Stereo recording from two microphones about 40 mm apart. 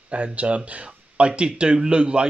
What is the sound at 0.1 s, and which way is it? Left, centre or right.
Speech, right.